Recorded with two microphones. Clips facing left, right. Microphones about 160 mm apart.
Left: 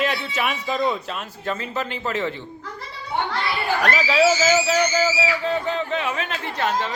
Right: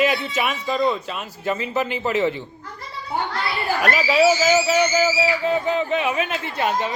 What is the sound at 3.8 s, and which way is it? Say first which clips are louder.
A man's voice: right 2 dB; 5° right (ahead or behind).